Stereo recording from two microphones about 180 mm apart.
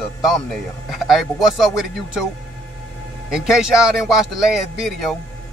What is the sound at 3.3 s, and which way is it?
Speech, 5° right (ahead or behind).